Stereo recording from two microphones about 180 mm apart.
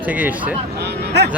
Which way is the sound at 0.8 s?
65° right (ahead or behind).